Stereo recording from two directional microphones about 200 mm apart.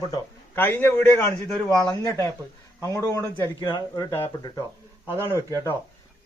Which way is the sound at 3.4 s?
20° left (ahead or behind).